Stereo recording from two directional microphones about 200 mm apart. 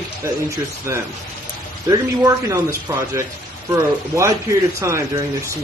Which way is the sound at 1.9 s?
15° right (ahead or behind).